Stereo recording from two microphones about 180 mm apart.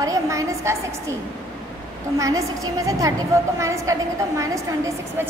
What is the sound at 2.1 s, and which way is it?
A woman's voice, 20° right (ahead or behind).